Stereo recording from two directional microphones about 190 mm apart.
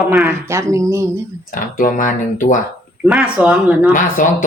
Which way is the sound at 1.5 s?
45° left (ahead or behind).